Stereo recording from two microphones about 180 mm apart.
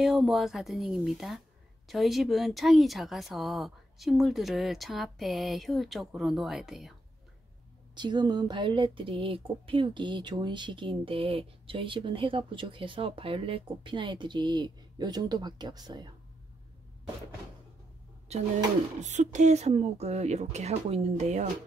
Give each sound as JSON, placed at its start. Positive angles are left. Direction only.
{"t": 0.0, "sound": "speech", "side_deg": 0}
{"t": 7.9, "sound": "speech", "side_deg": -25}
{"t": 18.3, "sound": "speech", "side_deg": -35}